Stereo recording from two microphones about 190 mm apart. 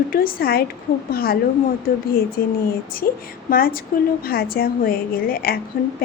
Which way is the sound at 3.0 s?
50° left (ahead or behind).